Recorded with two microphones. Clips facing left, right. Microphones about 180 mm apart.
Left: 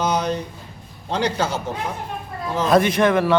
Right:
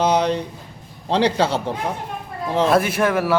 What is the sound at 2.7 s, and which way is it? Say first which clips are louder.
Speech: left 5 dB; 5° right (ahead or behind).